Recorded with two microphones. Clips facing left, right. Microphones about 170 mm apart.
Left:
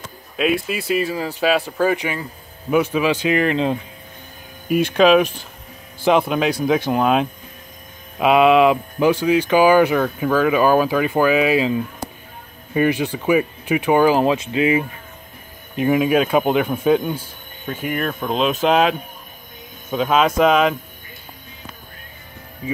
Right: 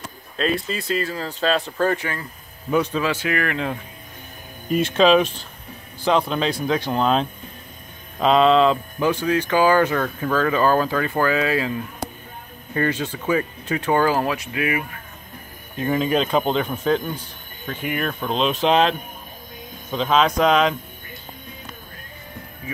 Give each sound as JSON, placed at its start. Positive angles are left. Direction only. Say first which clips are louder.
{"t": 0.4, "sound": "speech", "louder": "left 3 dB", "side_deg": 10}
{"t": 4.6, "sound": "speech", "louder": "left 2 dB", "side_deg": 5}
{"t": 15.7, "sound": "speech", "louder": "left 4 dB", "side_deg": 15}